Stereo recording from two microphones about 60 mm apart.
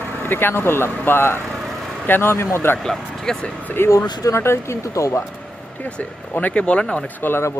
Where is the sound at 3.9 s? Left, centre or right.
Left.